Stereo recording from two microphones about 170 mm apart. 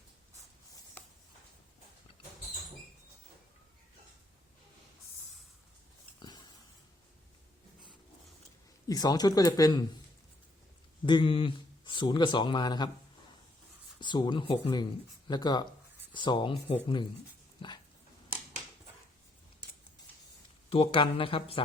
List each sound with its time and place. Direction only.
6.1 s a sound: 25° left (ahead or behind)
8.9 s speech: 25° left (ahead or behind)
11.0 s speech: 30° left (ahead or behind)
14.0 s speech: 25° left (ahead or behind)
17.6 s dog: 35° left (ahead or behind)
20.7 s speech: 35° left (ahead or behind)